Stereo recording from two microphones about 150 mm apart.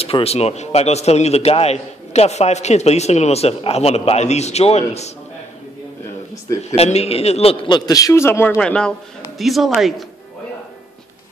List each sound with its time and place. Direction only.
0.0 s a man's voice: 40° left (ahead or behind)
6.7 s a man's voice: 45° left (ahead or behind); by 8.5 s 15° left (ahead or behind)
8.5 s speech: 5° left (ahead or behind)